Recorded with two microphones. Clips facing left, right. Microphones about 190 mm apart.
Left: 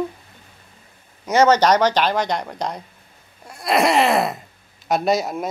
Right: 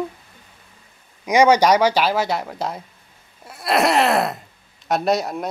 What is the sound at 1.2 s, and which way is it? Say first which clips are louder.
Speech: right 1 dB; 10° right (ahead or behind).